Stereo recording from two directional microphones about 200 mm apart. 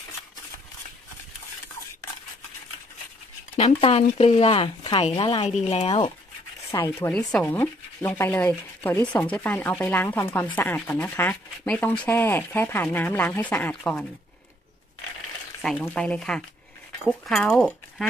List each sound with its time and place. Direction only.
3.5 s speech: 30° left (ahead or behind)
6.7 s speech: 15° left (ahead or behind)
15.6 s speech: 5° left (ahead or behind)